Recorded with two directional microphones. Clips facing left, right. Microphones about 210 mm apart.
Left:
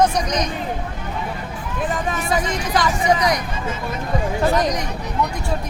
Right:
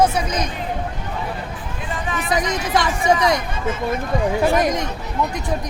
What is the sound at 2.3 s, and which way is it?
Speech, 20° right (ahead or behind).